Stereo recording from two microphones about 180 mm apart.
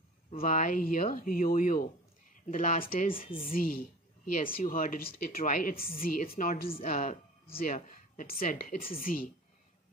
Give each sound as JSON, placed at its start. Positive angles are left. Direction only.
{"t": 0.4, "sound": "a woman's voice", "side_deg": 45}